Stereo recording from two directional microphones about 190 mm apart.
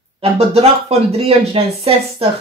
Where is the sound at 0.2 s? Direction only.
30° right (ahead or behind).